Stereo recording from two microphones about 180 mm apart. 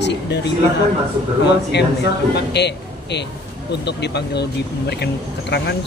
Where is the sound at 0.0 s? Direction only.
70° left (ahead or behind).